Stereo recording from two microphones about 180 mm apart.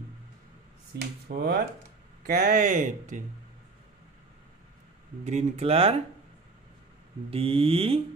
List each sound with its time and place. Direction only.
0.9 s speech: 65° right (ahead or behind)
2.2 s speech: 55° right (ahead or behind)
5.2 s speech: 40° right (ahead or behind)
7.2 s speech: 30° right (ahead or behind)